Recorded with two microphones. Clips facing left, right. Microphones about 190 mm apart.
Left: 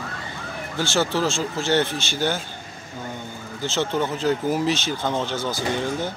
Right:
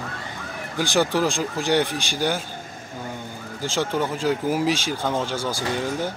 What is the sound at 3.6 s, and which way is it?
Speech, 10° right (ahead or behind).